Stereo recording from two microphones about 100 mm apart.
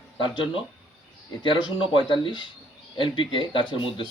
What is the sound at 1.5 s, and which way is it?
Speech, 55° left (ahead or behind).